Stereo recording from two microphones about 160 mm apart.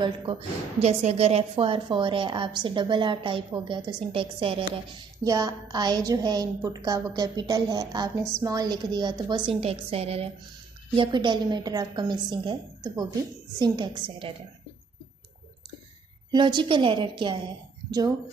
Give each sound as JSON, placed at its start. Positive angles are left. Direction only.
{"t": 0.0, "sound": "a woman's voice", "side_deg": -30}
{"t": 5.2, "sound": "a woman's voice", "side_deg": -20}
{"t": 16.3, "sound": "a woman's voice", "side_deg": -30}